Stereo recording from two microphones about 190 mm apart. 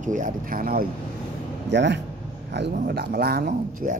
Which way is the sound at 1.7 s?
65° right (ahead or behind).